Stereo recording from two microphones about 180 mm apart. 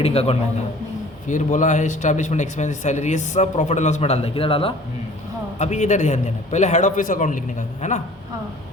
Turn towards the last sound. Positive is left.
turn(degrees=45)  # may be behind; listen again after turning